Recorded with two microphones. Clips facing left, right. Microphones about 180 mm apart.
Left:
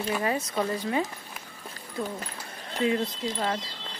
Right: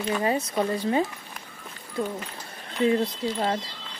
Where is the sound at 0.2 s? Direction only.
25° right (ahead or behind).